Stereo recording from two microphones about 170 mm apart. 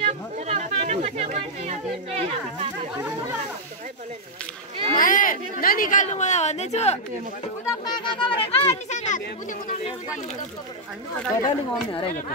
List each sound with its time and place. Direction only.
0.0 s speech: 40° right (ahead or behind)
4.9 s speech: 50° left (ahead or behind)
7.6 s speech: 25° left (ahead or behind); by 9.8 s 50° left (ahead or behind)
11.4 s speech: 30° left (ahead or behind)